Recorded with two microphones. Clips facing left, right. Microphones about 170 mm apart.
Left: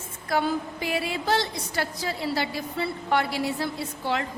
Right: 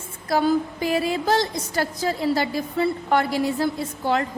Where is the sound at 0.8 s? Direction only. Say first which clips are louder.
Right 5 dB; 40° right (ahead or behind).